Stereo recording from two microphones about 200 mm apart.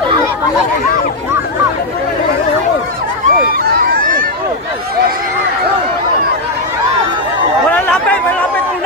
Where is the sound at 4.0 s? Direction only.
45° right (ahead or behind).